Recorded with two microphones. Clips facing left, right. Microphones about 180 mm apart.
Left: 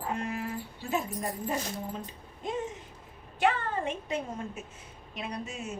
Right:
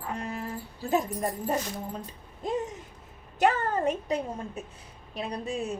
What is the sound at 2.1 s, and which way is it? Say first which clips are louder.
A woman's voice: right 4 dB; 40° right (ahead or behind).